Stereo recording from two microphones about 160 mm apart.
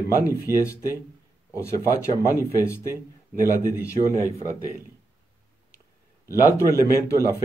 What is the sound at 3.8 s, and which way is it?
Speech, 20° left (ahead or behind).